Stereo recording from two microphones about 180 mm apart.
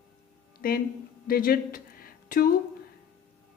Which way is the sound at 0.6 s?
50° left (ahead or behind).